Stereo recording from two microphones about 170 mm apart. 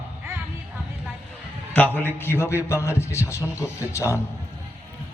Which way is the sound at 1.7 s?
10° left (ahead or behind).